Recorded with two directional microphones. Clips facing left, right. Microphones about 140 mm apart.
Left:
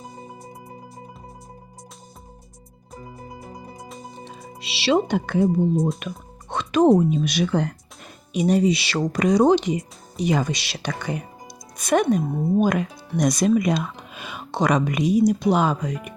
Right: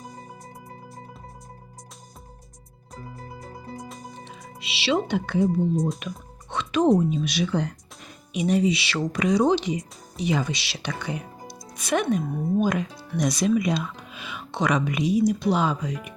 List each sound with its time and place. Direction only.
3.5 s music: 15° left (ahead or behind)
4.3 s speech: 35° left (ahead or behind)
6.0 s music: 50° left (ahead or behind)
7.1 s speech: 50° left (ahead or behind)
8.3 s speech: 40° left (ahead or behind)
12.5 s speech: 55° left (ahead or behind)